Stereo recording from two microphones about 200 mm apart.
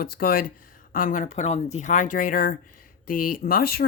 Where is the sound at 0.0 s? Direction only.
45° left (ahead or behind).